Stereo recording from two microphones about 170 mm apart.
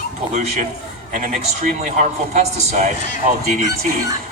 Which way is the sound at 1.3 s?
45° right (ahead or behind).